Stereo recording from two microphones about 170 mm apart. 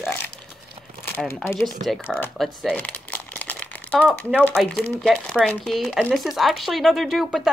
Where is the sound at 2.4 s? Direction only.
5° left (ahead or behind).